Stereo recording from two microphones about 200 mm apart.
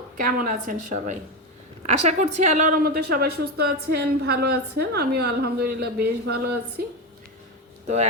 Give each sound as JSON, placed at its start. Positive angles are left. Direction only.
{"t": 0.3, "sound": "a woman's voice", "side_deg": -45}